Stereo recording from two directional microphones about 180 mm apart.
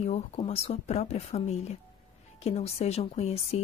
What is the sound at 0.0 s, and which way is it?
Speech, 35° left (ahead or behind).